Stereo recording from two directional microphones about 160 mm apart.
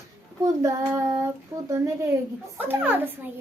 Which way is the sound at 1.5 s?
15° right (ahead or behind).